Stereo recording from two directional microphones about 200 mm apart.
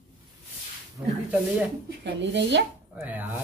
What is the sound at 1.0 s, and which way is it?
Speech, 15° right (ahead or behind).